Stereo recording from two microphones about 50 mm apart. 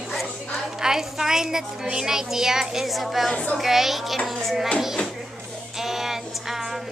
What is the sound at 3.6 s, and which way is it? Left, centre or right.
A woman's voice, centre.